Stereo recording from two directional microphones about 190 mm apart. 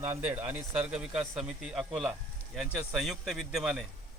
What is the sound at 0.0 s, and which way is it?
A man's voice, 10° right (ahead or behind).